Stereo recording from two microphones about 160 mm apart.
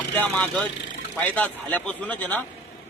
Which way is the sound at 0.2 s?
10° left (ahead or behind).